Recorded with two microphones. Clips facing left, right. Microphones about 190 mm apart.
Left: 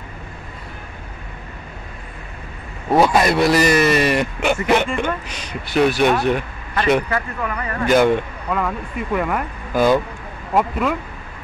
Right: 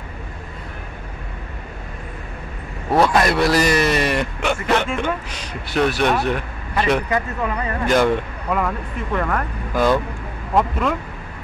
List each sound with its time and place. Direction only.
2.9 s a man's voice: 5° left (ahead or behind)
4.8 s a man's voice: 5° right (ahead or behind)
7.1 s speech: 20° right (ahead or behind)
7.8 s a man's voice: centre (ahead or behind)